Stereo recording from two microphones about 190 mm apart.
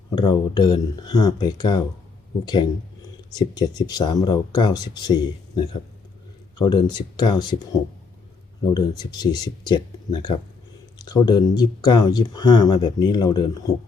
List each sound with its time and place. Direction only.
0.2 s speech: 20° left (ahead or behind)
8.6 s speech: 20° left (ahead or behind)